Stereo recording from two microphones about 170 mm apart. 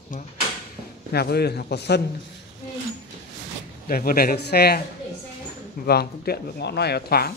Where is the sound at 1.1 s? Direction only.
70° left (ahead or behind).